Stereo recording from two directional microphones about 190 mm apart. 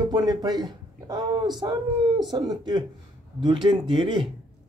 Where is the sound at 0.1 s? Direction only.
20° right (ahead or behind).